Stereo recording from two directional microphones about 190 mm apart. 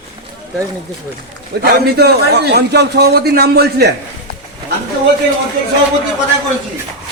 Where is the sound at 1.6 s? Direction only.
60° right (ahead or behind).